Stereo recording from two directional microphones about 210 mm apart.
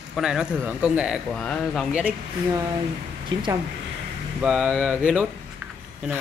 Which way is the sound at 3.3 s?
20° right (ahead or behind).